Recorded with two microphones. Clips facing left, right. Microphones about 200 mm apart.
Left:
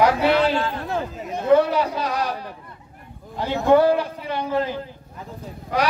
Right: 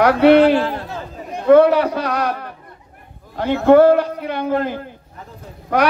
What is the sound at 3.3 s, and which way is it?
A man's voice, 60° right (ahead or behind).